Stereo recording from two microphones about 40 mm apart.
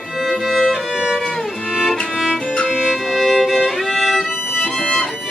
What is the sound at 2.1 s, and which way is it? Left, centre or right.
Music, centre.